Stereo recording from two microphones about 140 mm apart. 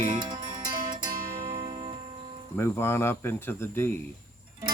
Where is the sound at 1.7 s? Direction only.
40° right (ahead or behind).